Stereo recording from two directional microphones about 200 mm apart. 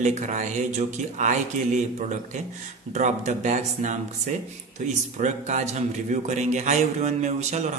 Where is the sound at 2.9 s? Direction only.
35° right (ahead or behind).